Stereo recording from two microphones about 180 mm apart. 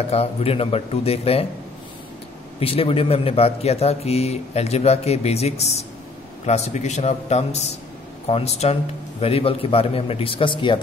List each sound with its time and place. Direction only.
0.1 s a man's voice: 35° left (ahead or behind)
2.6 s a man's voice: 30° left (ahead or behind)